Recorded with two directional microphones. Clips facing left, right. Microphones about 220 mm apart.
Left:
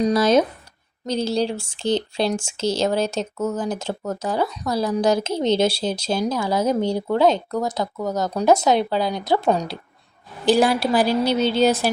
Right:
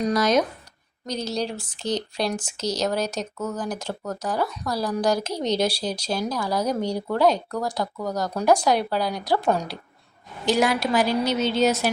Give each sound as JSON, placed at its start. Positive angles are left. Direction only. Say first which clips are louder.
{"t": 0.0, "sound": "speech", "louder": "left 4 dB", "side_deg": 30}
{"t": 10.4, "sound": "a woman's voice", "louder": "left 4 dB", "side_deg": 35}